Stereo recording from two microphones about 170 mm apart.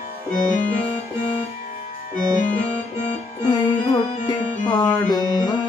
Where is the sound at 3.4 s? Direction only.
25° left (ahead or behind).